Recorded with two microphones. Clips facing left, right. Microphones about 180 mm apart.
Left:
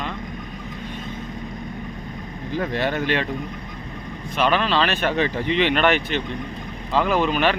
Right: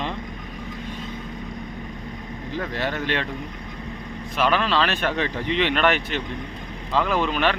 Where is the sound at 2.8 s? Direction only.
15° left (ahead or behind).